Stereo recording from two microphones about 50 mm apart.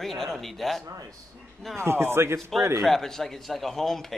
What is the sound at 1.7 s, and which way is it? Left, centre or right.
Speech, right.